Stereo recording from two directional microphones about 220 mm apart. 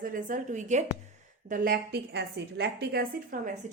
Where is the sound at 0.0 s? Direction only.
40° right (ahead or behind).